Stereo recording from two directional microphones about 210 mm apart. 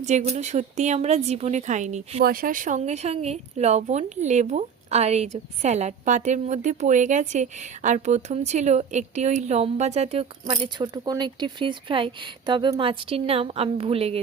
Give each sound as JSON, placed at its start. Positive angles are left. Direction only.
{"t": 0.0, "sound": "speech", "side_deg": -35}